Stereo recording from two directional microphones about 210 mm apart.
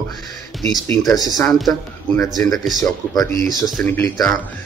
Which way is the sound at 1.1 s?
15° left (ahead or behind).